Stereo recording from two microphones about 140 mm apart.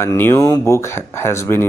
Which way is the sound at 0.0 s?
20° left (ahead or behind).